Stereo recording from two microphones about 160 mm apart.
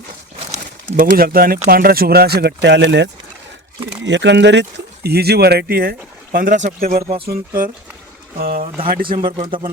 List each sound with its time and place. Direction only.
0.9 s speech: 65° right (ahead or behind)
9.2 s speech: 30° right (ahead or behind)